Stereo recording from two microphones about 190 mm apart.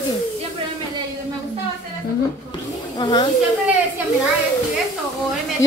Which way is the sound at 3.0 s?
25° left (ahead or behind).